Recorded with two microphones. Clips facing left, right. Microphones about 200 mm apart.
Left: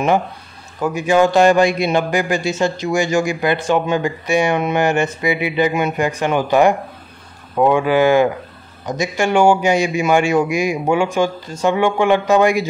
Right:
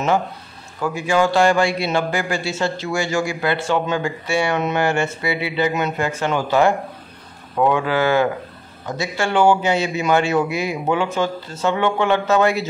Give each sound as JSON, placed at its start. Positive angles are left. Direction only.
{"t": 0.7, "sound": "a man's voice", "side_deg": 20}